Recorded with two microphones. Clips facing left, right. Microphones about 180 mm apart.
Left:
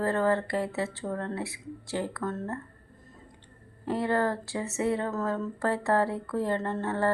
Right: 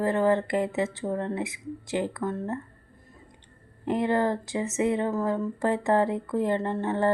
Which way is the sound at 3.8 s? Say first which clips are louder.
Right 3 dB; 15° right (ahead or behind).